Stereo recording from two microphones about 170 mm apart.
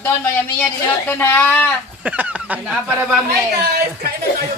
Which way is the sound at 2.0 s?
5° right (ahead or behind).